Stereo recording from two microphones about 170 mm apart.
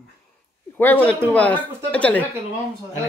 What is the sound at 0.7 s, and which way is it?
Speech, 10° left (ahead or behind).